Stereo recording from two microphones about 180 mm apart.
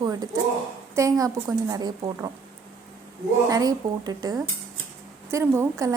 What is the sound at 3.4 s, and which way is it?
A woman's voice, 20° right (ahead or behind).